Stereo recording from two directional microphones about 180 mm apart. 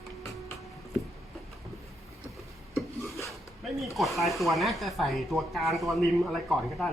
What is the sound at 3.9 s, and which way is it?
Speech, centre (ahead or behind).